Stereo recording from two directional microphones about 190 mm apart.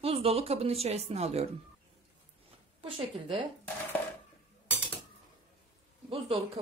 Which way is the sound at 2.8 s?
30° right (ahead or behind).